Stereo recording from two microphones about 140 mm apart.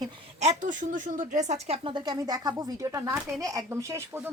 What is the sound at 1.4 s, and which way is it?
Speech, 55° right (ahead or behind).